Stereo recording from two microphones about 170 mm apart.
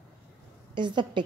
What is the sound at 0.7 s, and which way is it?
Speech, 25° right (ahead or behind).